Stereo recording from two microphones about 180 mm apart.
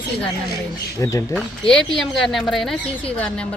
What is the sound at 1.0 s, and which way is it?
Speech, 15° left (ahead or behind).